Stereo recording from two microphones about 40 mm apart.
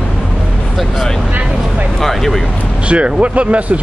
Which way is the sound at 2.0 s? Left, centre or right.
Centre.